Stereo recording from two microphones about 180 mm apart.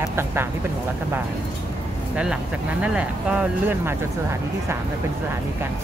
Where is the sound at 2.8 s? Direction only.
5° right (ahead or behind).